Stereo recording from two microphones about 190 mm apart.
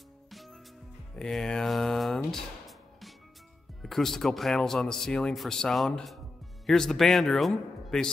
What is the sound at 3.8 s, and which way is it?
Speech, centre (ahead or behind).